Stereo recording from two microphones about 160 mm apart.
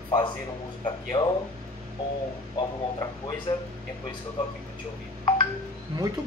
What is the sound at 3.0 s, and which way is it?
Speech, 25° left (ahead or behind).